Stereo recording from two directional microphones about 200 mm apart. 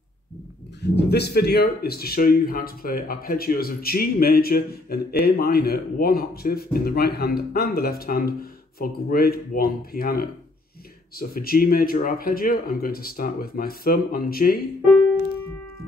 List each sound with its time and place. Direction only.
0.8 s speech: 55° left (ahead or behind)